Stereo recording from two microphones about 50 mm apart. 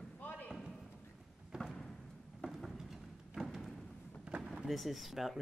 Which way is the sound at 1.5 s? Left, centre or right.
Centre.